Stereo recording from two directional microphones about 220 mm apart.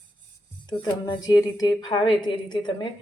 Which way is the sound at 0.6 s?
20° left (ahead or behind).